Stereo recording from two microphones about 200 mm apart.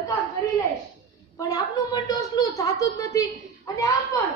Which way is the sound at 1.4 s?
15° left (ahead or behind).